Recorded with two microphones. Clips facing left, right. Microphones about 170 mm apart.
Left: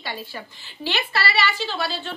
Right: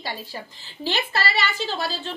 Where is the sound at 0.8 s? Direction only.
45° right (ahead or behind).